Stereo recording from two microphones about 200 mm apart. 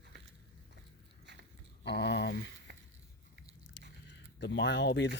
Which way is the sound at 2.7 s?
55° right (ahead or behind).